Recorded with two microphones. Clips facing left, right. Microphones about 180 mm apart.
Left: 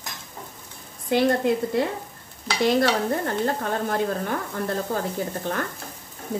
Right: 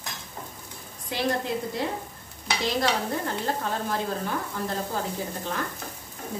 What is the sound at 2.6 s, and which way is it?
Speech, 55° left (ahead or behind).